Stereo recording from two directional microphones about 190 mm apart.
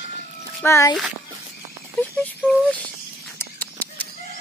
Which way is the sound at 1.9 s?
5° left (ahead or behind).